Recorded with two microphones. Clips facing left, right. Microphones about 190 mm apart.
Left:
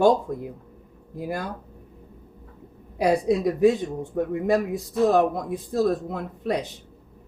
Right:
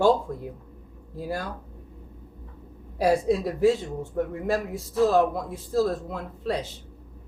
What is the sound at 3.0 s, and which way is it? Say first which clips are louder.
Speech: left 1 dB; 20° left (ahead or behind).